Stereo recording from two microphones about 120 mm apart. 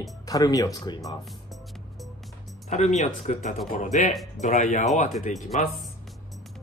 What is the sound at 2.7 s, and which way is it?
Speech, 70° left (ahead or behind).